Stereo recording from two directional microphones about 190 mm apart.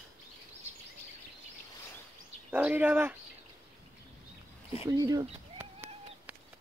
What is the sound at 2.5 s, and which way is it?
Speech, 10° right (ahead or behind).